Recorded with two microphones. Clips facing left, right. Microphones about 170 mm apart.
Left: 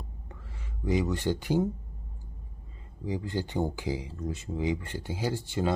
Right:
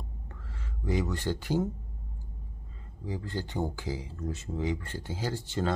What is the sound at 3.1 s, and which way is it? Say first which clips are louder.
Speech: left 3 dB; 15° left (ahead or behind).